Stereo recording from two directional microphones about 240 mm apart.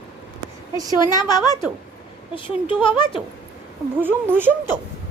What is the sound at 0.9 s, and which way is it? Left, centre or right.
A woman's voice, centre.